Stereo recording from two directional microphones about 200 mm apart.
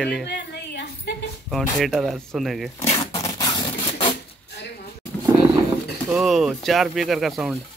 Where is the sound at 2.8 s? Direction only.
30° left (ahead or behind).